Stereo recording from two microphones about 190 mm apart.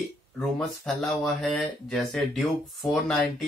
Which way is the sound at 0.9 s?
Centre (ahead or behind).